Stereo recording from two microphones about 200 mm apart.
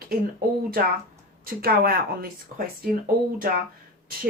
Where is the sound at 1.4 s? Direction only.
50° right (ahead or behind).